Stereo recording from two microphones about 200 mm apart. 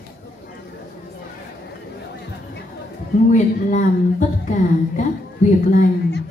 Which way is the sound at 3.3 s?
40° left (ahead or behind).